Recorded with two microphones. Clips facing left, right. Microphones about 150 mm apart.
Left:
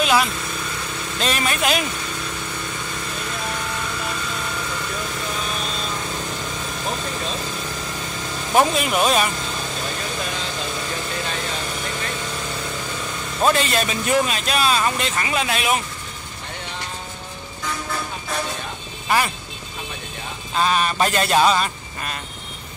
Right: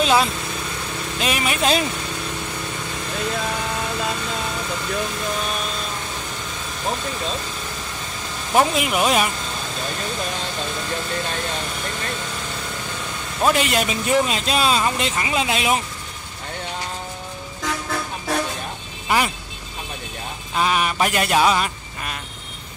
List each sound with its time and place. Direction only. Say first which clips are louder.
0.0 s lawn mower: right 1 dB; 30° right (ahead or behind)
1.2 s speech: even; 10° right (ahead or behind)
1.6 s speech: right 4 dB; 30° right (ahead or behind)
8.7 s speech: even; 10° right (ahead or behind)
13.4 s speech: even; 15° right (ahead or behind)
19.0 s speech: even; 15° right (ahead or behind)
20.5 s speech: left 1 dB; 10° right (ahead or behind)